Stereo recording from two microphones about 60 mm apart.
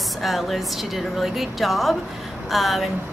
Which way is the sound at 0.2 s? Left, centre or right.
Centre.